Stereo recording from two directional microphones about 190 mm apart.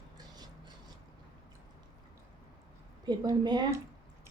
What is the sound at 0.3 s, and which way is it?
Filing, 20° right (ahead or behind).